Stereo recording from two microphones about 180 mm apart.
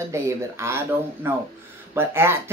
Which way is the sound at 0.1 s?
15° right (ahead or behind).